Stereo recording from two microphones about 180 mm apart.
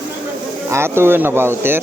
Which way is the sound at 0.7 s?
15° right (ahead or behind).